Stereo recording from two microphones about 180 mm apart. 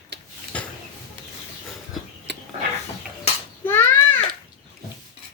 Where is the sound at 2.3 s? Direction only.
70° right (ahead or behind).